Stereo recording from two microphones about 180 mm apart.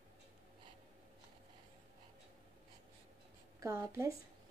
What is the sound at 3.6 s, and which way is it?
Speech, 15° right (ahead or behind).